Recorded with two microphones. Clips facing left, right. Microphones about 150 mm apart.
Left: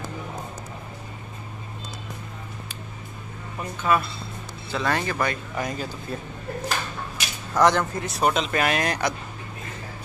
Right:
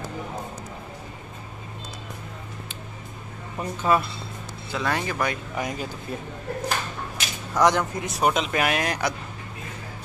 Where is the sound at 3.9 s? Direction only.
35° right (ahead or behind).